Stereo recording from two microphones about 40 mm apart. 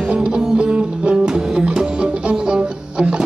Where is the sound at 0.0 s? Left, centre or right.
Right.